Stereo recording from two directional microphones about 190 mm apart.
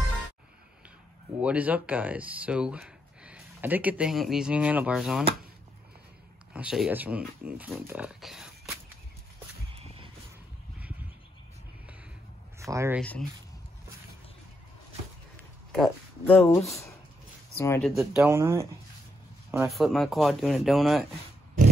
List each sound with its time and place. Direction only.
1.4 s speech: 5° right (ahead or behind)
6.5 s speech: 5° right (ahead or behind)
12.5 s speech: 15° right (ahead or behind)
13.0 s speech: 5° left (ahead or behind)
15.7 s speech: 5° left (ahead or behind)
17.9 s speech: 15° right (ahead or behind)
19.7 s speech: centre (ahead or behind)